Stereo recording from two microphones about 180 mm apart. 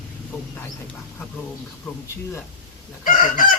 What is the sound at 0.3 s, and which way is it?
Speech, 10° left (ahead or behind).